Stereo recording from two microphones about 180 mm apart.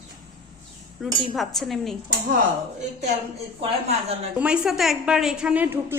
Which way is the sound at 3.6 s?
30° right (ahead or behind).